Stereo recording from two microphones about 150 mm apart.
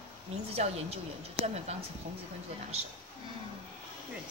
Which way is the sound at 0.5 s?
45° right (ahead or behind).